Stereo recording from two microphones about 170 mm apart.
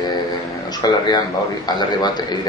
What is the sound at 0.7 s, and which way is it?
A man's voice, 25° left (ahead or behind).